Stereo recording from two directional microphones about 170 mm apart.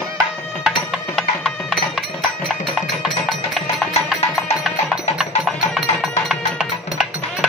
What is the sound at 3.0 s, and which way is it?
Music, centre (ahead or behind).